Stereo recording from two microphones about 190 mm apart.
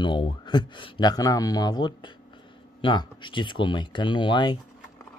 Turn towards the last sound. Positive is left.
turn(degrees=25)  # may be behind; listen again after turning